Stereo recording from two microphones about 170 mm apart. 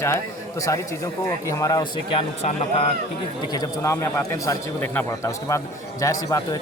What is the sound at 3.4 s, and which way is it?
A man's voice, 25° left (ahead or behind).